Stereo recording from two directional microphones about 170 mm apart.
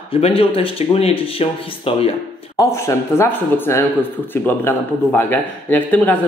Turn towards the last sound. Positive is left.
turn(degrees=10)  # may be behind; listen again after turning